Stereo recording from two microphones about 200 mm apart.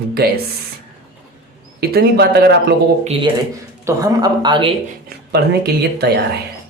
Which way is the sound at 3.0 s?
30° right (ahead or behind).